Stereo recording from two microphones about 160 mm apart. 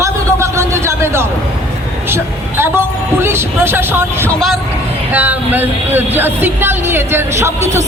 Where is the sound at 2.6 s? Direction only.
15° right (ahead or behind).